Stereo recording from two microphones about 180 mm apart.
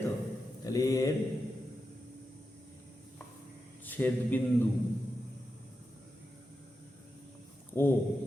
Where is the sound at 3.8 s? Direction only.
10° left (ahead or behind).